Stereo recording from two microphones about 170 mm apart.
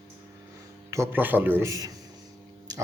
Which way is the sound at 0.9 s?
15° right (ahead or behind).